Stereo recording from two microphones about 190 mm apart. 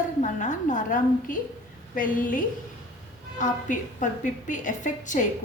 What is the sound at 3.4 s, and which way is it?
A woman's voice, 40° left (ahead or behind).